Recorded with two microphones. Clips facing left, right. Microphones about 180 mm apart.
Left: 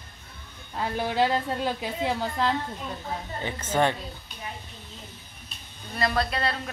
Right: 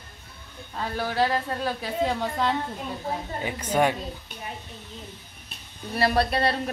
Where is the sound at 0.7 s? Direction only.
20° left (ahead or behind).